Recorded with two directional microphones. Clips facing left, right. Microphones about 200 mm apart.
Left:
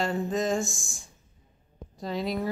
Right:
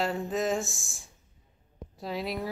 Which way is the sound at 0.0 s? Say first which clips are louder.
Left 2 dB; centre (ahead or behind).